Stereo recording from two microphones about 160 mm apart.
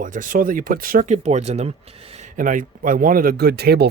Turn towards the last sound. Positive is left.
turn(degrees=-90)